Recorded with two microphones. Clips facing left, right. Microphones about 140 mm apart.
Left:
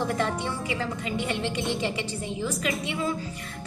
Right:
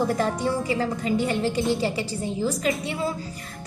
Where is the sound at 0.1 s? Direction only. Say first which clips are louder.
Right 4 dB; 40° right (ahead or behind).